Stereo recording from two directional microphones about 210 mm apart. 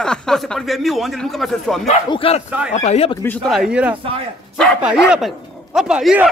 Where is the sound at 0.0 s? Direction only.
5° left (ahead or behind).